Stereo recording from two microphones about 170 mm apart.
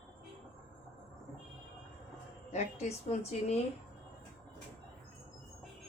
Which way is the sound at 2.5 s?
40° left (ahead or behind).